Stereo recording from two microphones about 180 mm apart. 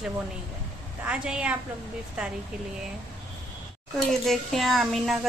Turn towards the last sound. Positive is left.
turn(degrees=0)  # may be behind; listen again after turning